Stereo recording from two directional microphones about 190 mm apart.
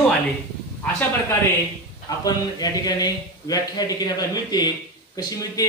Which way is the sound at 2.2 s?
20° left (ahead or behind).